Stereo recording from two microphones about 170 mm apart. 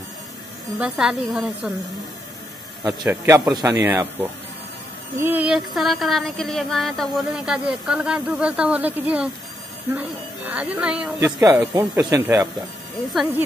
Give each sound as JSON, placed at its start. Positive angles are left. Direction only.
{"t": 0.7, "sound": "speech", "side_deg": -5}
{"t": 2.8, "sound": "speech", "side_deg": -25}